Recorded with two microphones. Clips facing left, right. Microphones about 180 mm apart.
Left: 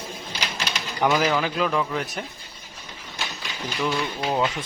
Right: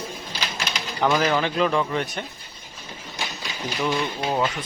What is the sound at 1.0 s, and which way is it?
Speech, 5° left (ahead or behind).